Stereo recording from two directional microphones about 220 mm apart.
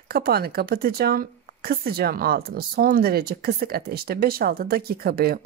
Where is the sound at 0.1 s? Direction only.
45° right (ahead or behind).